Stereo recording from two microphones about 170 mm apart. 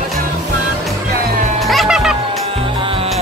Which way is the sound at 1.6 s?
Centre (ahead or behind).